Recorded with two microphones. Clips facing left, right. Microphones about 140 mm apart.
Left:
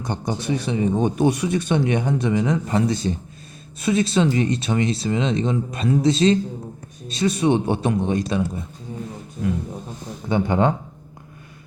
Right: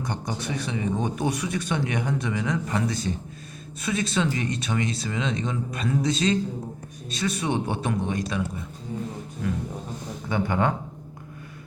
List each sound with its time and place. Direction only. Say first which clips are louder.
0.0 s speech: left 4 dB; 25° left (ahead or behind)
10.2 s speech: left 5 dB; 25° left (ahead or behind)